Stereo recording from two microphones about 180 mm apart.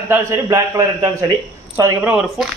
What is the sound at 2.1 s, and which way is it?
Speech, centre (ahead or behind).